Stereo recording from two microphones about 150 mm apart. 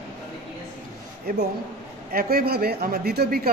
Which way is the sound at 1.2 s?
90° right.